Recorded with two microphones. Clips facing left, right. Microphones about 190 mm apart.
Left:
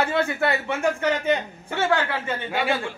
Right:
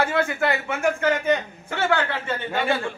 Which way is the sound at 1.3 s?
20° left (ahead or behind).